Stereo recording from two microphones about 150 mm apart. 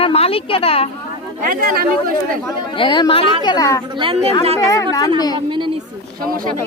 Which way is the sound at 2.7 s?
35° left (ahead or behind).